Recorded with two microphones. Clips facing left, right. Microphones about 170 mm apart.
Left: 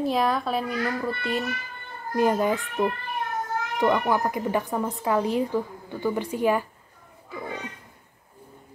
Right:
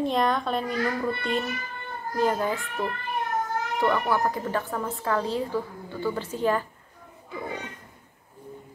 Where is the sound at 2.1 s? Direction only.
15° left (ahead or behind).